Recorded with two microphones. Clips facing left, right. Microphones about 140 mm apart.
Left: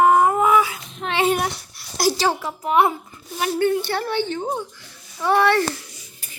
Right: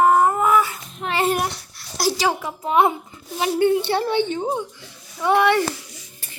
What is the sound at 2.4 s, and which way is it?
A child's voice, 20° right (ahead or behind).